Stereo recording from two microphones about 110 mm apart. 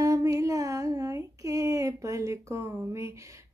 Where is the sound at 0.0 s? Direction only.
30° right (ahead or behind).